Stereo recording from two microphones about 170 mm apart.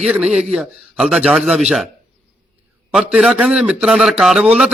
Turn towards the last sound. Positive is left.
turn(degrees=-5)  # may be behind; listen again after turning